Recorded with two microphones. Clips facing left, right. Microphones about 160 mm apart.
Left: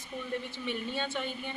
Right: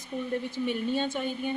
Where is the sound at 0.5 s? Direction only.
45° right (ahead or behind).